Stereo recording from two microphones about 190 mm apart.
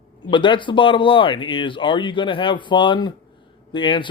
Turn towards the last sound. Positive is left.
turn(degrees=25)  # may be behind; listen again after turning